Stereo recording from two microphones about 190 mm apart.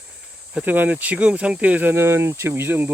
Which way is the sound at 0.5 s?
10° right (ahead or behind).